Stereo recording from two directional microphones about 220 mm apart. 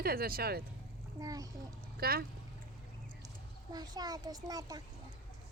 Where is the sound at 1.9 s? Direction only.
45° right (ahead or behind).